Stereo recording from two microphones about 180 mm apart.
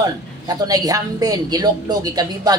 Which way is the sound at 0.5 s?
20° right (ahead or behind).